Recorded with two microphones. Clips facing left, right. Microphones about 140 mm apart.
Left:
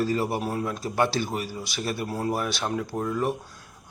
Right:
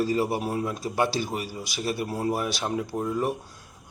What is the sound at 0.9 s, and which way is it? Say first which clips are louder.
Speech: left 1 dB; 10° right (ahead or behind).